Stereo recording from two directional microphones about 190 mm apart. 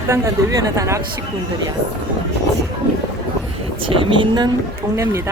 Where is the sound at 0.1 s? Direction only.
15° right (ahead or behind).